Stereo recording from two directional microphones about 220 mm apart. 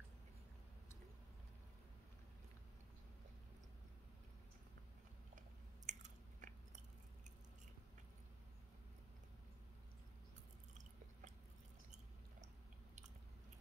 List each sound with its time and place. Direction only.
5.9 s chewing: 35° right (ahead or behind)